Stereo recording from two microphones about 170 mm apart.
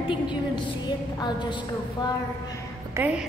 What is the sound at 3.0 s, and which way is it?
Speech, 10° right (ahead or behind).